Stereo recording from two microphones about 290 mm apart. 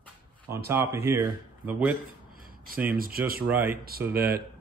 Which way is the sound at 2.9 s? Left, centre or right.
Right.